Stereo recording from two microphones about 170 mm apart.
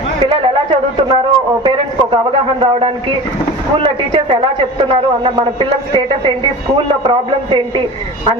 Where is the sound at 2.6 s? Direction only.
35° right (ahead or behind).